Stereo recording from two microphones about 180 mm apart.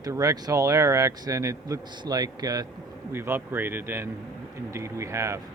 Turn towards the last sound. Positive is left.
turn(degrees=-15)  # may be behind; listen again after turning